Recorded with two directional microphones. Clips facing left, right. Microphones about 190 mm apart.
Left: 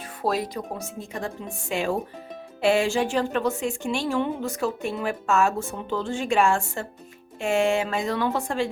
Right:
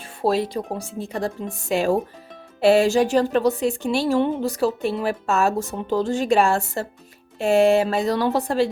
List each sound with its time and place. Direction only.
0.2 s speech: 30° right (ahead or behind)